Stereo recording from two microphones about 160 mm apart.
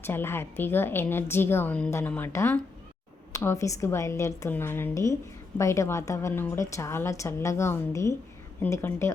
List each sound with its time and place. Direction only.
0.0 s a woman's voice: 15° left (ahead or behind)